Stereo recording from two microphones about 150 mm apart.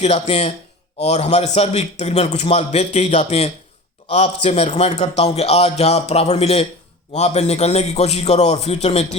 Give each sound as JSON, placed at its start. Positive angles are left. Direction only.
{"t": 0.0, "sound": "a man's voice", "side_deg": 45}